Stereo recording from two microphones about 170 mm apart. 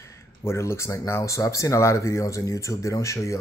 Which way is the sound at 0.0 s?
15° left (ahead or behind).